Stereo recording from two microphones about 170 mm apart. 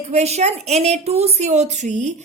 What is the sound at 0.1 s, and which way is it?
A woman's voice, 40° right (ahead or behind).